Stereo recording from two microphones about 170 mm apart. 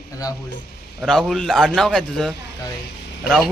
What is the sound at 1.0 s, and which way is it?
Speech, centre (ahead or behind).